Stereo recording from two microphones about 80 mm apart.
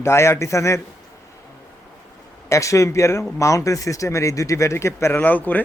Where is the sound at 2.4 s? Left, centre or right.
Left.